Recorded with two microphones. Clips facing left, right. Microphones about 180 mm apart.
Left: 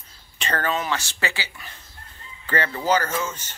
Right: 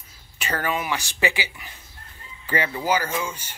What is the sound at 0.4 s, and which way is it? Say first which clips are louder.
Speech: left 1 dB; 10° right (ahead or behind).